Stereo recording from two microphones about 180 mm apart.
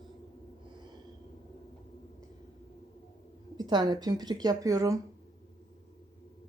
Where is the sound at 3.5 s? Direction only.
25° right (ahead or behind).